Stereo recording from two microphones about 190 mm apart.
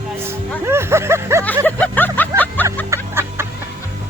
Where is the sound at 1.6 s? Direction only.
10° left (ahead or behind).